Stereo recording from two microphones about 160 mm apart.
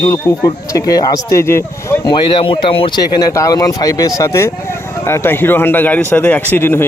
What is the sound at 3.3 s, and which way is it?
Speech, 20° left (ahead or behind).